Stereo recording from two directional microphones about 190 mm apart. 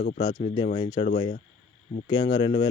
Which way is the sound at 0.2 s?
25° left (ahead or behind).